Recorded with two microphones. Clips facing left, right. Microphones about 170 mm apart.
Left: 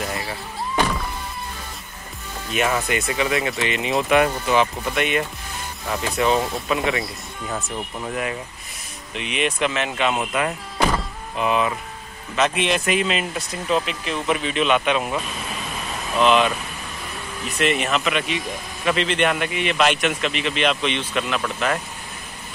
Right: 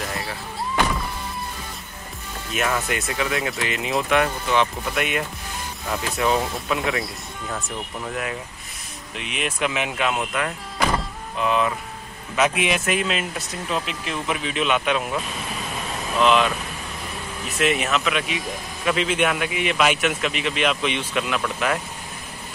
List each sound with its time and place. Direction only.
2.5 s a man's voice: centre (ahead or behind)
9.1 s a man's voice: centre (ahead or behind)
11.3 s speech: 10° left (ahead or behind)
12.4 s a man's voice: 5° right (ahead or behind)
16.2 s a man's voice: centre (ahead or behind)
17.6 s a man's voice: centre (ahead or behind)